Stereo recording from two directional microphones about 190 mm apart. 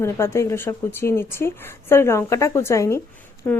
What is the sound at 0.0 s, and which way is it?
Speech, 15° left (ahead or behind).